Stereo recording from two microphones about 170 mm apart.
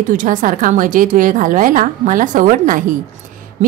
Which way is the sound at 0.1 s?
50° right (ahead or behind).